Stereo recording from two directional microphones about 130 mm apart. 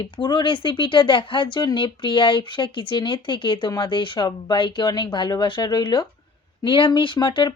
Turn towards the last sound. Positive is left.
turn(degrees=35)  # may be behind; listen again after turning